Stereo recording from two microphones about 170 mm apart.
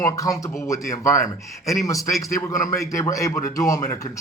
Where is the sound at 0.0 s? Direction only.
20° left (ahead or behind).